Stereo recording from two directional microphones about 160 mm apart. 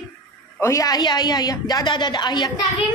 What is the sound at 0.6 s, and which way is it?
A woman's voice, 20° left (ahead or behind).